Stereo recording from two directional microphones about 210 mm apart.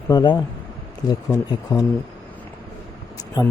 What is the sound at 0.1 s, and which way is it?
Speech, 20° left (ahead or behind).